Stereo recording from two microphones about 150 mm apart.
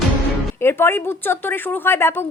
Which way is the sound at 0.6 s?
15° left (ahead or behind).